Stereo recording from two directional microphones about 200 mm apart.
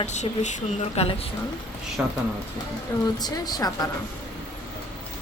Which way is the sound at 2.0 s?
5° right (ahead or behind).